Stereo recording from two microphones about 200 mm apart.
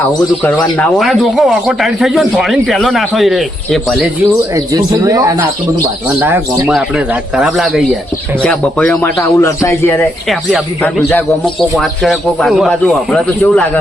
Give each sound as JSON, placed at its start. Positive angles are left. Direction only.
{"t": 0.4, "sound": "speech", "side_deg": 5}
{"t": 4.5, "sound": "speech", "side_deg": -15}
{"t": 11.8, "sound": "speech", "side_deg": 0}